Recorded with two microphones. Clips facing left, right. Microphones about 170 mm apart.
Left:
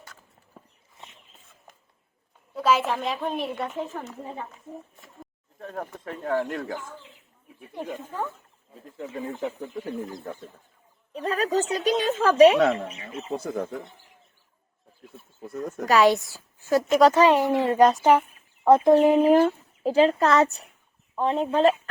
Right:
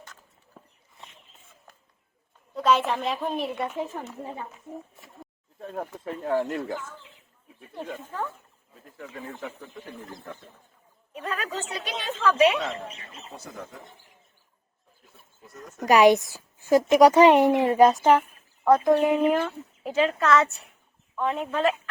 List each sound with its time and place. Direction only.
0.6 s a sound: centre (ahead or behind)
2.6 s a woman's voice: 5° left (ahead or behind)
7.6 s speech: 15° left (ahead or behind)
9.5 s a woman's voice: 35° left (ahead or behind)
13.3 s speech: 55° left (ahead or behind)
15.4 s speech: 55° left (ahead or behind)
15.9 s a woman's voice: 20° right (ahead or behind)
17.7 s a woman's voice: centre (ahead or behind)
18.2 s a woman's voice: 20° left (ahead or behind)